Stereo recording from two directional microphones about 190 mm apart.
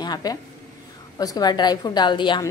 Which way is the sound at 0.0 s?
20° left (ahead or behind).